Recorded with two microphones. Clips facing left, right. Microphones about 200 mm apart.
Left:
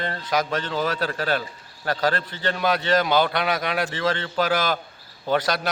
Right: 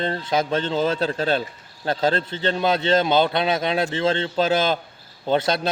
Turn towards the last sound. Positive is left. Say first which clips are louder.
# right 2 dB
turn(degrees=-25)  # may be behind; listen again after turning